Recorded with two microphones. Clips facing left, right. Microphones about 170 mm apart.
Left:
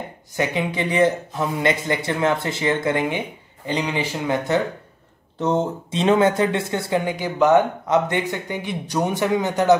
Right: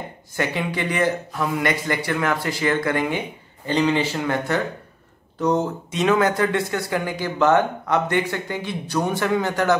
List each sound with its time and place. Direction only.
0.4 s speech: 20° left (ahead or behind)